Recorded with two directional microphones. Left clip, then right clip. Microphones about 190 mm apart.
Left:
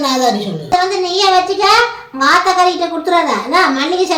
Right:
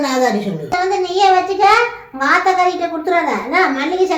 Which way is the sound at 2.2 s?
35° left (ahead or behind).